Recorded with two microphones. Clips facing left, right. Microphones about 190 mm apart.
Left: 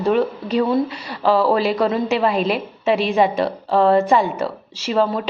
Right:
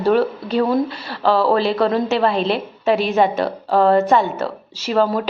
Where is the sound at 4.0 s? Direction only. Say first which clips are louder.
Right 1 dB; 10° left (ahead or behind).